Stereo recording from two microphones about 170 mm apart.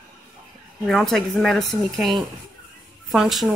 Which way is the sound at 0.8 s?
Centre (ahead or behind).